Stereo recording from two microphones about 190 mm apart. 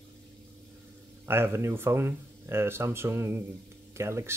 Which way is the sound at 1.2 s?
10° right (ahead or behind).